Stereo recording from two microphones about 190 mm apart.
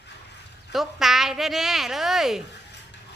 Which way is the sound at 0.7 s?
Centre (ahead or behind).